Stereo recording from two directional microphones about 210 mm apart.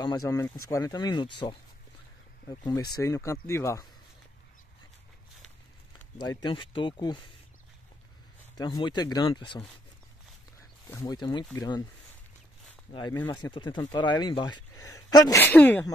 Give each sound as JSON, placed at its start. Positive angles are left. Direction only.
{"t": 0.0, "sound": "speech", "side_deg": 20}
{"t": 2.4, "sound": "speech", "side_deg": 20}
{"t": 6.1, "sound": "speech", "side_deg": 20}
{"t": 8.5, "sound": "speech", "side_deg": 20}
{"t": 10.9, "sound": "speech", "side_deg": 15}
{"t": 12.6, "sound": "zipper", "side_deg": 20}
{"t": 13.3, "sound": "speech", "side_deg": 20}